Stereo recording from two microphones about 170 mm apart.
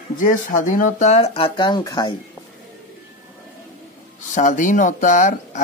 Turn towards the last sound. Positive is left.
turn(degrees=45)  # may be behind; listen again after turning